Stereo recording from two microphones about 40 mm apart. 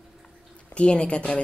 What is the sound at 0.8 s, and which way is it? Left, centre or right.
Speech, left.